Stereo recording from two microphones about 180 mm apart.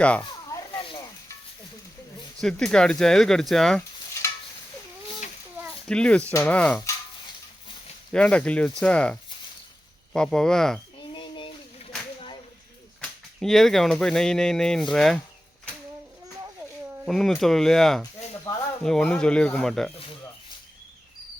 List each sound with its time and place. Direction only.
0.2 s a sound: 20° left (ahead or behind)
2.4 s speech: 5° left (ahead or behind)
5.9 s speech: 5° left (ahead or behind)
8.1 s speech: 5° left (ahead or behind)
11.1 s a sound: 25° left (ahead or behind)
13.0 s speech: centre (ahead or behind)
17.1 s speech: centre (ahead or behind)
18.5 s a sound: 15° left (ahead or behind)
18.8 s speech: 5° left (ahead or behind)